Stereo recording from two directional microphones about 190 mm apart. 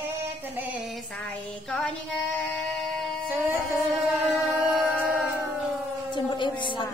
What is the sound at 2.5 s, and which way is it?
Music, centre (ahead or behind).